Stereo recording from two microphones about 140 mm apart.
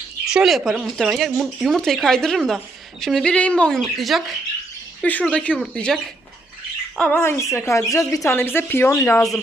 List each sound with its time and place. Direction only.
0.3 s speech: centre (ahead or behind)
5.0 s speech: 10° left (ahead or behind)